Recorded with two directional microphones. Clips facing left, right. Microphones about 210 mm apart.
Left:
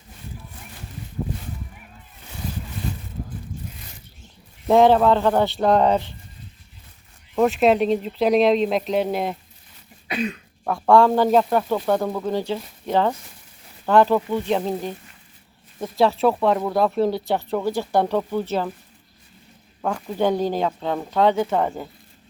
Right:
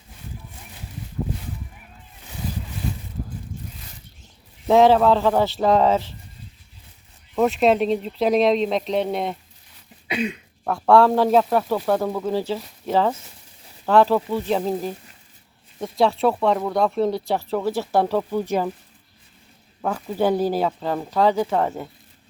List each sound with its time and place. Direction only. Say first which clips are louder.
4.6 s speech: even; centre (ahead or behind)
7.3 s speech: left 1 dB; centre (ahead or behind)
10.1 s speech: right 1 dB; 15° right (ahead or behind)
10.6 s speech: even; centre (ahead or behind)
19.8 s speech: even; 5° right (ahead or behind)